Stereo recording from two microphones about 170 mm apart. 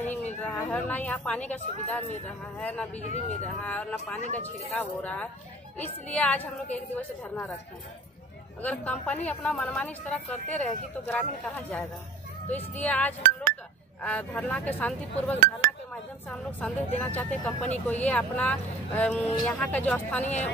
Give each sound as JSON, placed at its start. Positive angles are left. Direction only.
{"t": 0.0, "sound": "a sound", "side_deg": 10}
{"t": 0.4, "sound": "a woman's voice", "side_deg": 5}
{"t": 3.0, "sound": "speech", "side_deg": 45}
{"t": 3.4, "sound": "a woman's voice", "side_deg": 5}
{"t": 8.6, "sound": "a woman's voice", "side_deg": 10}